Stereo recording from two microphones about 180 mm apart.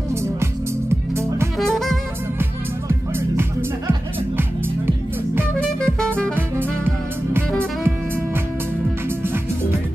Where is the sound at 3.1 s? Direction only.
15° right (ahead or behind).